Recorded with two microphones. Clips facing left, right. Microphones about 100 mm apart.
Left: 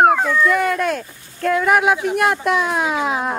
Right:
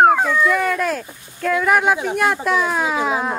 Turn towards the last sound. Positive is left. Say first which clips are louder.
# even
turn(degrees=0)  # may be behind; listen again after turning